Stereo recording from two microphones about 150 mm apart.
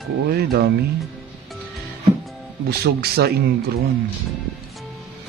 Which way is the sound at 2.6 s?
90° right.